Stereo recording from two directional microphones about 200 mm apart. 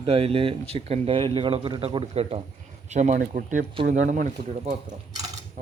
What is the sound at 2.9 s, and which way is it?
Speech, 35° right (ahead or behind).